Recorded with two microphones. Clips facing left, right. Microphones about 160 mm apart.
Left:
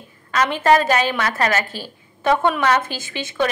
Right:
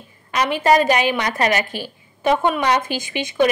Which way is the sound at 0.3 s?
10° right (ahead or behind).